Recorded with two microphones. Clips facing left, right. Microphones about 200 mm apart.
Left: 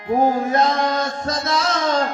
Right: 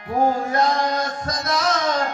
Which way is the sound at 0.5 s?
25° left (ahead or behind).